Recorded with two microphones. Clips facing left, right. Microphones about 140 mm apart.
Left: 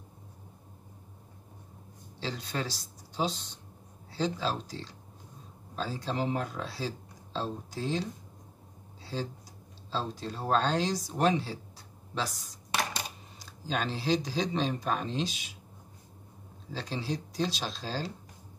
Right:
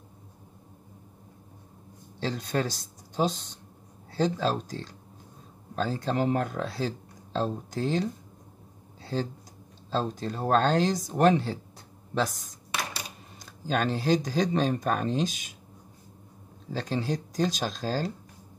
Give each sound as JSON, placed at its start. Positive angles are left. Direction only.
{"t": 2.1, "sound": "speech", "side_deg": -50}
{"t": 9.0, "sound": "a sound", "side_deg": -50}
{"t": 9.8, "sound": "speech", "side_deg": -50}
{"t": 16.7, "sound": "speech", "side_deg": -50}